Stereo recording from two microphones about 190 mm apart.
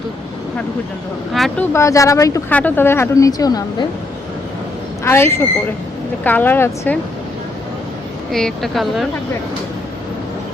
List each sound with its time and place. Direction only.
1.3 s speech: centre (ahead or behind)
1.7 s speech: 15° left (ahead or behind)
5.0 s speech: 15° left (ahead or behind)
8.3 s speech: centre (ahead or behind)